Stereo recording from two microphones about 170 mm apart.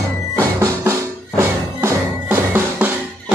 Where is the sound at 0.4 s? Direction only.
15° right (ahead or behind).